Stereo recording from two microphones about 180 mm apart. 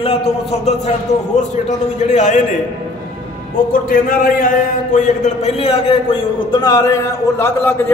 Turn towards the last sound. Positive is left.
turn(degrees=10)  # may be behind; listen again after turning